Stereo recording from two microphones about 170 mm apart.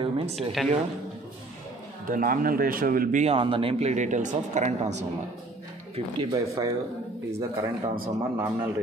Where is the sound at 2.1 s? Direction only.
55° right (ahead or behind).